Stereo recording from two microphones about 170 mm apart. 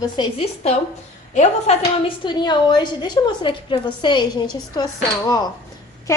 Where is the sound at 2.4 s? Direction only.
25° left (ahead or behind).